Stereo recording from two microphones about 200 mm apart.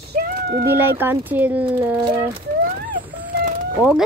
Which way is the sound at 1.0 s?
10° right (ahead or behind).